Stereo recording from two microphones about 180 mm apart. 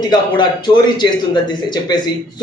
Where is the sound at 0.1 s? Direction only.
25° left (ahead or behind).